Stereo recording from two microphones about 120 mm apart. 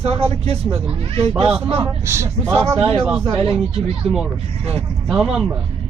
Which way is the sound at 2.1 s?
20° right (ahead or behind).